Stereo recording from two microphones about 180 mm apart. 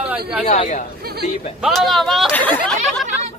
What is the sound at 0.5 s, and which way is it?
Speech, 35° left (ahead or behind).